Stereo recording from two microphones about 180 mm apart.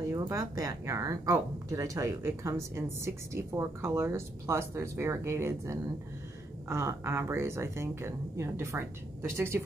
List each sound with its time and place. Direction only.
0.2 s speech: 20° right (ahead or behind)